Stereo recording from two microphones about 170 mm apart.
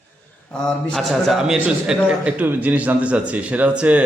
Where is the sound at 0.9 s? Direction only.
Centre (ahead or behind).